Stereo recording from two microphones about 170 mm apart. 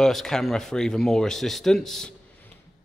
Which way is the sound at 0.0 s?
Centre (ahead or behind).